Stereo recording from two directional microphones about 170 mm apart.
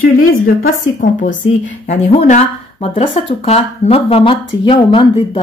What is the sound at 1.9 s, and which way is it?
Speech, 40° left (ahead or behind).